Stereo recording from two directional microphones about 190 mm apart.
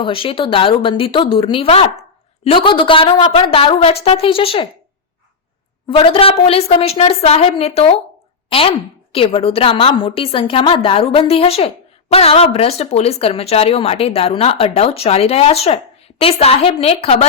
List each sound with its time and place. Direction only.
0.0 s a woman's voice: 30° left (ahead or behind)
5.9 s a woman's voice: 30° left (ahead or behind)